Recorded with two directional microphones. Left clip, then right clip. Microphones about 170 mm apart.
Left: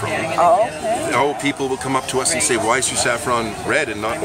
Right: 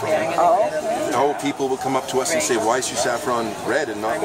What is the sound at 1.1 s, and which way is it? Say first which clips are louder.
Speech: left 1 dB; 20° right (ahead or behind).